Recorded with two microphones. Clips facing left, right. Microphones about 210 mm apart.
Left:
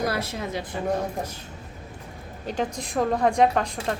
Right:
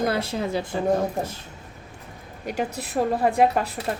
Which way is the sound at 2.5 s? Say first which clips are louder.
Even; 10° right (ahead or behind).